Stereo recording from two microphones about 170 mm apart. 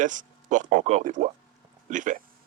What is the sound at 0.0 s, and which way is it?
Speech, 50° right (ahead or behind).